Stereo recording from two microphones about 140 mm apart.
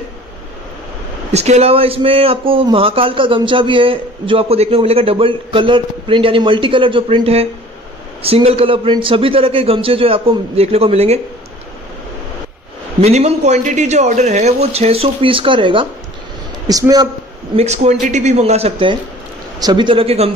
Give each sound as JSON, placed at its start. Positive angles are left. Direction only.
{"t": 1.3, "sound": "a man's voice", "side_deg": -50}
{"t": 13.0, "sound": "a man's voice", "side_deg": -50}
{"t": 16.6, "sound": "a man's voice", "side_deg": -25}
{"t": 17.6, "sound": "a man's voice", "side_deg": -50}
{"t": 19.6, "sound": "a man's voice", "side_deg": -35}